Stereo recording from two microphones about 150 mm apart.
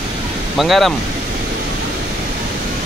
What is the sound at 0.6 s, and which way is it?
Speech, centre (ahead or behind).